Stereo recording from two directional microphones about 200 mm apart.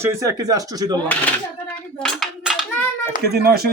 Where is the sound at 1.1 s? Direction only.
5° left (ahead or behind).